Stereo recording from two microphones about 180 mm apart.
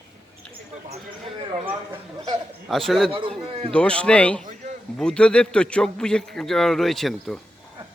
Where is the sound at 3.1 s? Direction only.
30° right (ahead or behind).